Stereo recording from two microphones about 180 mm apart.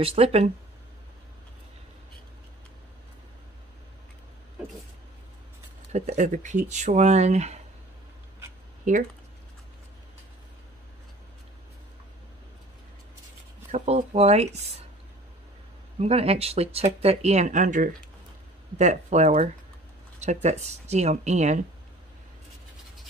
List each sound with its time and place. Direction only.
0.0 s speech: 35° right (ahead or behind)
5.9 s speech: 40° right (ahead or behind)
8.9 s speech: 45° right (ahead or behind)
13.7 s speech: 40° right (ahead or behind)
16.0 s speech: 35° right (ahead or behind)